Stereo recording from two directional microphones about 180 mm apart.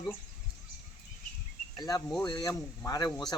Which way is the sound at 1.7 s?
20° left (ahead or behind).